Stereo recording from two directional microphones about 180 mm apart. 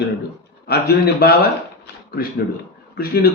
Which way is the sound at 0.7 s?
60° left (ahead or behind).